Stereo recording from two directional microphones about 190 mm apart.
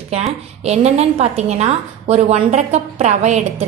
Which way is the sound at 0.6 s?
35° right (ahead or behind).